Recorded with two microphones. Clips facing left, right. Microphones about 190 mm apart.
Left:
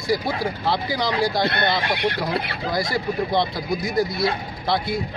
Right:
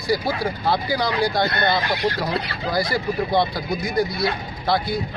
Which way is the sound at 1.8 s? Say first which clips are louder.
Right 1 dB; 25° left (ahead or behind).